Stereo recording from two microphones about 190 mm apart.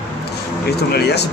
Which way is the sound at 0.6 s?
60° left (ahead or behind).